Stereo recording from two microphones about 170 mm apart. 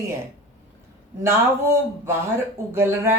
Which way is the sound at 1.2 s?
15° right (ahead or behind).